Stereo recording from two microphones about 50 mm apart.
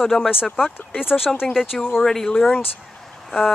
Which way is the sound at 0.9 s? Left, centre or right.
Centre.